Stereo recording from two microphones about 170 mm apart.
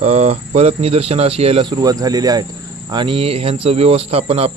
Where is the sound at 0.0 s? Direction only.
40° right (ahead or behind).